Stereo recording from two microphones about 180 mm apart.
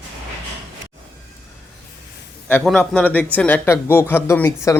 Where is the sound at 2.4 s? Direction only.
5° left (ahead or behind).